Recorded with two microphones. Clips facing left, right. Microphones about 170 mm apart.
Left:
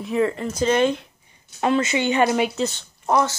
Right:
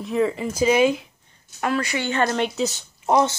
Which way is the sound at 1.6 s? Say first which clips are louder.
Left 4 dB; 20° left (ahead or behind).